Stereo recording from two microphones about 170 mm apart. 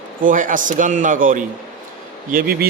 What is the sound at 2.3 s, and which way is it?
Speech, 65° right (ahead or behind).